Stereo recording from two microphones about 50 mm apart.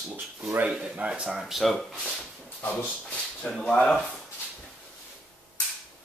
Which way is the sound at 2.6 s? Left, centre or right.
Left.